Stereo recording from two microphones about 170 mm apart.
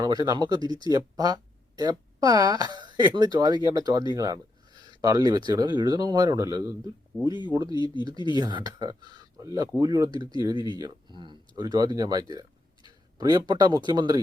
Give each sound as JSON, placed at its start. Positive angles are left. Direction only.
{"t": 0.0, "sound": "speech", "side_deg": -25}